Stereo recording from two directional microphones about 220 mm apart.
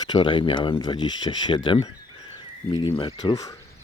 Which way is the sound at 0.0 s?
20° left (ahead or behind).